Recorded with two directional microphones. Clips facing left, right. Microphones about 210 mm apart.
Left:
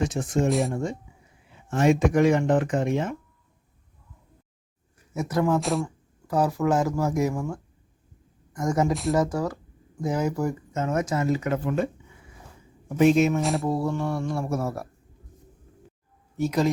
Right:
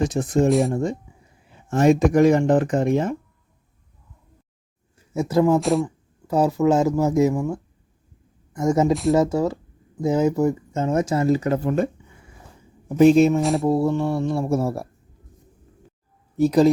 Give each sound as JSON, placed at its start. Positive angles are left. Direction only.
{"t": 0.0, "sound": "speech", "side_deg": -35}
{"t": 4.9, "sound": "speech", "side_deg": -25}
{"t": 5.5, "sound": "speech", "side_deg": 0}
{"t": 5.8, "sound": "speech", "side_deg": -25}
{"t": 8.9, "sound": "speech", "side_deg": 0}
{"t": 9.1, "sound": "speech", "side_deg": -25}
{"t": 13.0, "sound": "speech", "side_deg": -35}
{"t": 13.4, "sound": "speech", "side_deg": 0}
{"t": 13.7, "sound": "speech", "side_deg": -25}
{"t": 16.4, "sound": "speech", "side_deg": -35}